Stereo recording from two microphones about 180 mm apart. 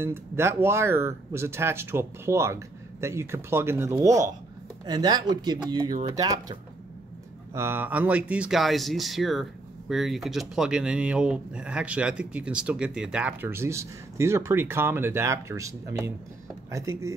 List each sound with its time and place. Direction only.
0.0 s speech: 15° right (ahead or behind)